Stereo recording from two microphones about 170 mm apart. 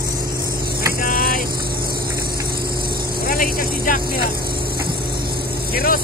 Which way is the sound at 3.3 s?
55° left (ahead or behind).